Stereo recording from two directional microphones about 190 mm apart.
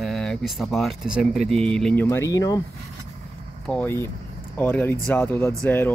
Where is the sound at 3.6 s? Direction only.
5° left (ahead or behind).